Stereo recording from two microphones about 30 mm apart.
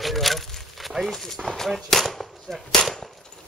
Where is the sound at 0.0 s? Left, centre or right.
Centre.